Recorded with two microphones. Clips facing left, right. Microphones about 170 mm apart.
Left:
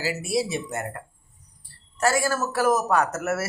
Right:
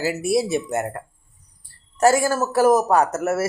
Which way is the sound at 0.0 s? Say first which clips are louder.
Right 5 dB; 50° right (ahead or behind).